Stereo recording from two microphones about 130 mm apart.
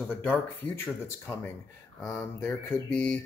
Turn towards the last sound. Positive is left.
turn(degrees=10)  # may be behind; listen again after turning